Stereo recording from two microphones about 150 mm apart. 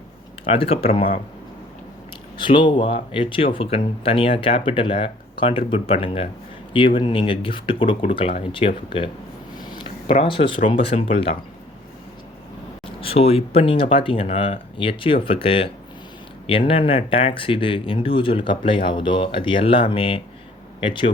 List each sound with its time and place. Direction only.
0.4 s speech: 40° left (ahead or behind)
2.4 s speech: 35° left (ahead or behind)
12.8 s speech: 40° left (ahead or behind)